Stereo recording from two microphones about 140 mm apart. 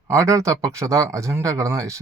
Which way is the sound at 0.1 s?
20° right (ahead or behind).